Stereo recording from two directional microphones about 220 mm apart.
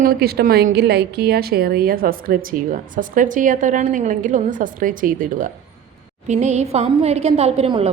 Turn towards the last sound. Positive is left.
turn(degrees=-25)  # may be behind; listen again after turning